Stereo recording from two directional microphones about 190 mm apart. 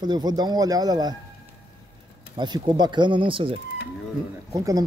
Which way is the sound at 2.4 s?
25° right (ahead or behind).